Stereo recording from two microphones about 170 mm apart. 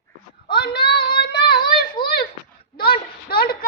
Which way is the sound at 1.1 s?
30° left (ahead or behind).